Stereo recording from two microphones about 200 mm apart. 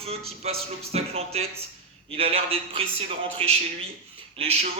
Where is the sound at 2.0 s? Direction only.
30° right (ahead or behind).